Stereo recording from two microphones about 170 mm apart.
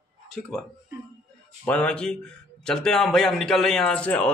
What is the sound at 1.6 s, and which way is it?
Speech, 5° left (ahead or behind).